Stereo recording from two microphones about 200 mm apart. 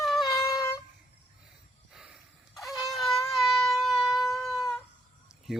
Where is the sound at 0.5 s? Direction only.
20° left (ahead or behind).